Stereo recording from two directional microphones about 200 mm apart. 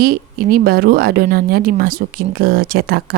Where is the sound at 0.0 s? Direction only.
50° right (ahead or behind).